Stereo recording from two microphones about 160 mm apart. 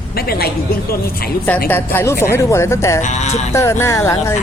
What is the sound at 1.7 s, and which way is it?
A woman's voice, 15° left (ahead or behind).